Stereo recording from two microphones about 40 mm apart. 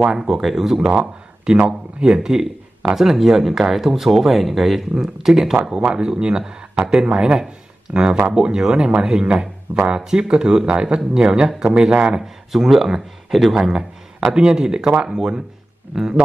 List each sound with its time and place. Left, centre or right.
0.3 s speech: centre
0.8 s speech: right
12.2 s speech: centre